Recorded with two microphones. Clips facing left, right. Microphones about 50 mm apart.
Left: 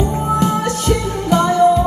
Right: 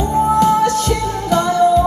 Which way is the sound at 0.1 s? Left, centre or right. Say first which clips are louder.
Right 4 dB; left.